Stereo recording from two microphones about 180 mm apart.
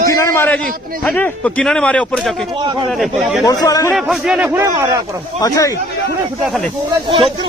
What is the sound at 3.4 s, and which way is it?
Speech, 20° left (ahead or behind).